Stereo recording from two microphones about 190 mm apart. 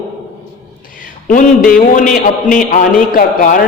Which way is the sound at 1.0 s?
45° left (ahead or behind).